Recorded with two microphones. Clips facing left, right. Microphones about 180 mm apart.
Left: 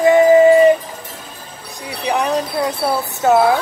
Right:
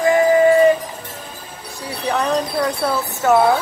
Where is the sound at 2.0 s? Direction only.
10° left (ahead or behind).